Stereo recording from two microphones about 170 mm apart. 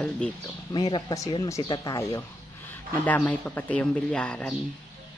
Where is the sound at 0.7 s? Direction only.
25° left (ahead or behind); by 4.5 s 5° left (ahead or behind).